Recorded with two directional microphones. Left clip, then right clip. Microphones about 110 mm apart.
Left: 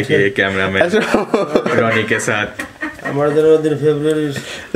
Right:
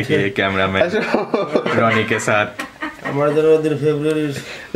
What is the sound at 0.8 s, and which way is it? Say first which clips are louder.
Speech: left 3 dB; 35° left (ahead or behind).